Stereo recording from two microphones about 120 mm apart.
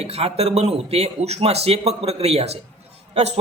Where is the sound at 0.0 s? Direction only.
55° right (ahead or behind).